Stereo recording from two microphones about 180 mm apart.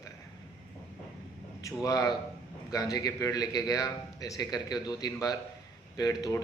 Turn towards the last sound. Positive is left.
turn(degrees=20)  # may be behind; listen again after turning